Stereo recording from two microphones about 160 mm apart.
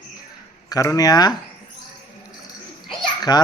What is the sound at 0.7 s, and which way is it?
Speech, 20° left (ahead or behind).